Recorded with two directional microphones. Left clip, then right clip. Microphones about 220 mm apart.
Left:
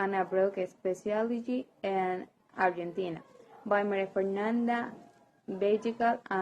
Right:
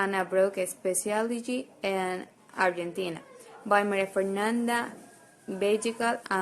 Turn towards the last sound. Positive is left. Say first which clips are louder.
# right 1 dB
turn(degrees=-20)  # may be behind; listen again after turning